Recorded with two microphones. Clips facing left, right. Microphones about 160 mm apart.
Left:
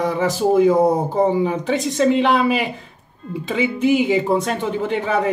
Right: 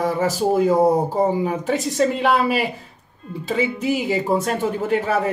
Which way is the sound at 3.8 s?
Centre (ahead or behind).